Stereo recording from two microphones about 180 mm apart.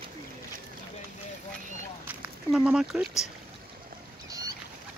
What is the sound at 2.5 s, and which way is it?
Speech, 5° right (ahead or behind).